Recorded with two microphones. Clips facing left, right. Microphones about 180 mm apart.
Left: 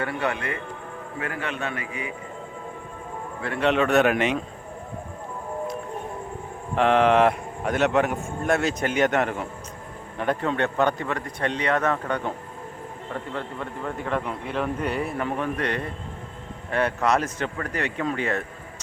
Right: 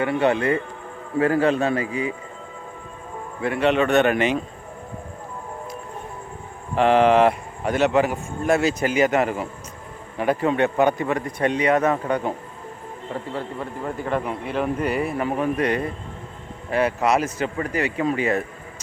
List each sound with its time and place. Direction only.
0.0 s a man's voice: 25° right (ahead or behind)
3.6 s a man's voice: centre (ahead or behind)
6.7 s a man's voice: centre (ahead or behind)
13.3 s speech: 5° right (ahead or behind)